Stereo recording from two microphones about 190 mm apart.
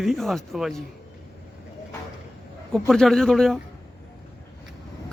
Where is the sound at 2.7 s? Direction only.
Centre (ahead or behind).